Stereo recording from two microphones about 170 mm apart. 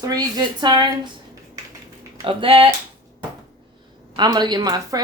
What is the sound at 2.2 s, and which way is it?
Speech, 35° right (ahead or behind).